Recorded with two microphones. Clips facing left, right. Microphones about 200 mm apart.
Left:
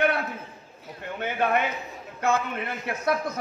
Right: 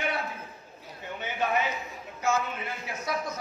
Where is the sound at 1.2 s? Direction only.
60° left (ahead or behind).